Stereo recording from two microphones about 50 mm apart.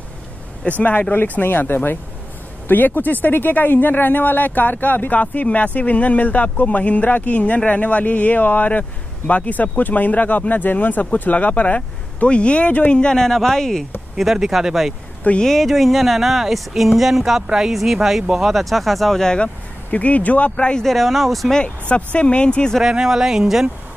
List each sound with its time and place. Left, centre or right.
0.7 s speech: left; by 13.8 s centre
14.1 s speech: centre
15.4 s speech: centre
19.3 s speech: left
20.8 s speech: centre
21.6 s speech: left
22.8 s speech: centre